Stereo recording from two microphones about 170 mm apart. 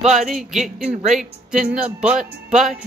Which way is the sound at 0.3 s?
5° right (ahead or behind).